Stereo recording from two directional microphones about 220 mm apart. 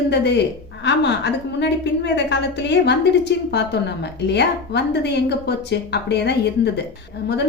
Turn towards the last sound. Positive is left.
turn(degrees=45)  # may be behind; listen again after turning